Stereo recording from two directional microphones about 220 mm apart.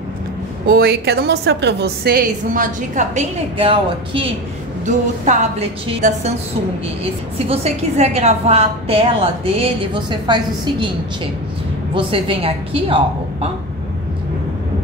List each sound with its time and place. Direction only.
0.7 s a woman's voice: 45° right (ahead or behind); by 6.3 s 30° right (ahead or behind)
7.4 s a woman's voice: 30° right (ahead or behind)
11.9 s a woman's voice: 25° right (ahead or behind)